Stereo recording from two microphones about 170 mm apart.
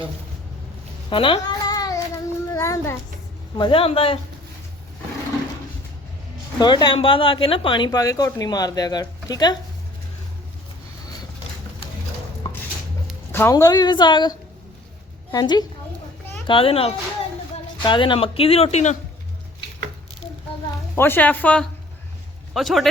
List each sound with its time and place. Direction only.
1.1 s child singing: 30° left (ahead or behind)
3.6 s speech: 30° left (ahead or behind)
6.6 s speech: 25° left (ahead or behind)
13.3 s speech: 15° left (ahead or behind); by 18.9 s 40° left (ahead or behind)
20.9 s a man's voice: 15° left (ahead or behind)